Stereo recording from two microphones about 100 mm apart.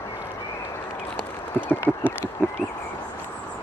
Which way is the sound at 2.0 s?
20° left (ahead or behind).